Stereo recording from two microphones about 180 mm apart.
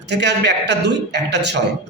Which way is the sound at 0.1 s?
70° right (ahead or behind).